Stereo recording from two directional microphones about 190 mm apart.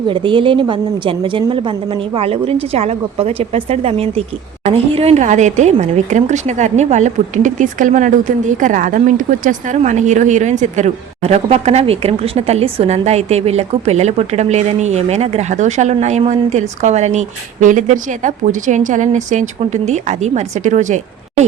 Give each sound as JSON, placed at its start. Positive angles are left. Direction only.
{"t": 0.1, "sound": "a woman's voice", "side_deg": -25}